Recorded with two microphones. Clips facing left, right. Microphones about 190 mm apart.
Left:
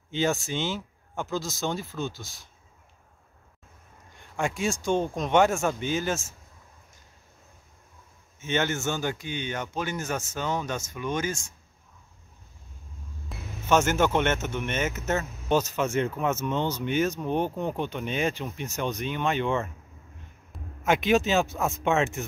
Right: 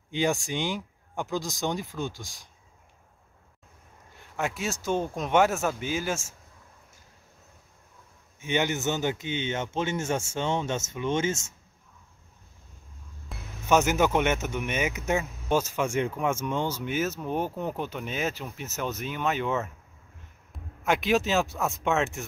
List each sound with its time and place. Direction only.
0.1 s speech: 15° right (ahead or behind)
4.4 s speech: 5° right (ahead or behind)
8.4 s a man's voice: 15° right (ahead or behind)
13.3 s speech: 5° right (ahead or behind)